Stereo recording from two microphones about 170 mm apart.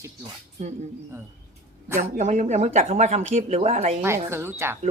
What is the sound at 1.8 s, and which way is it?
Speech, 15° right (ahead or behind).